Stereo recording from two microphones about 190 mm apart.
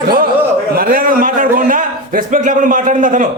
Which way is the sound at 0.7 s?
50° right (ahead or behind).